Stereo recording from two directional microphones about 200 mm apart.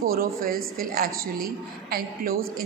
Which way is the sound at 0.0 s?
45° right (ahead or behind).